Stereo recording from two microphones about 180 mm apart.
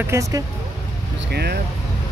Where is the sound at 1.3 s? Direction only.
65° right (ahead or behind).